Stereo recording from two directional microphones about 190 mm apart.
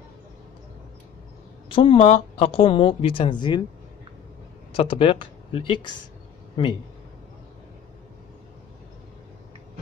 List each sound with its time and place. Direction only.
1.7 s speech: 25° left (ahead or behind)
4.7 s speech: 30° left (ahead or behind)